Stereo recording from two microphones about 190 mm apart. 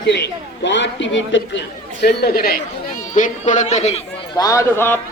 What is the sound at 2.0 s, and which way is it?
Speech, 55° left (ahead or behind).